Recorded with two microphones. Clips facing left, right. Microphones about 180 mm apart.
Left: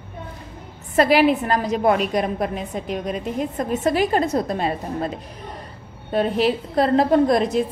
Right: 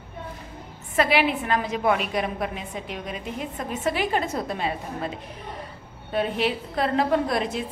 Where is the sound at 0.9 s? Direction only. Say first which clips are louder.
Left 6 dB; 40° left (ahead or behind).